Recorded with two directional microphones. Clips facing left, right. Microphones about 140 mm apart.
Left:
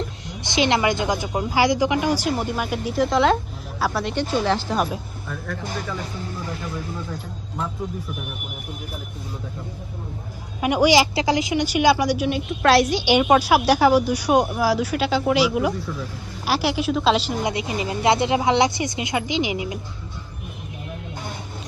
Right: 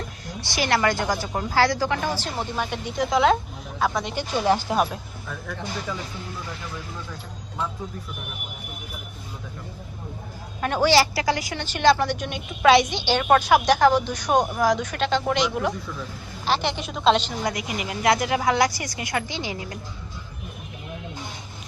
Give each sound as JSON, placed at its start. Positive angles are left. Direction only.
{"t": 0.4, "sound": "a woman's voice", "side_deg": 20}
{"t": 4.1, "sound": "a woman's voice", "side_deg": -10}
{"t": 4.8, "sound": "speech", "side_deg": 0}
{"t": 10.6, "sound": "a woman's voice", "side_deg": 15}
{"t": 17.4, "sound": "a woman's voice", "side_deg": 25}